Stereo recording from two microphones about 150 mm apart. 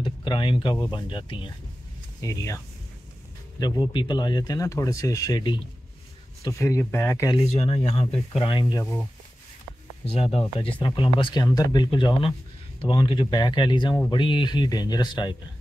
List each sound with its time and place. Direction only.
0.0 s speech: 35° left (ahead or behind)
2.2 s speech: 20° left (ahead or behind)
6.4 s speech: 20° left (ahead or behind)
7.3 s speech: 45° left (ahead or behind)
8.4 s speech: 35° left (ahead or behind)
10.0 s speech: 40° left (ahead or behind)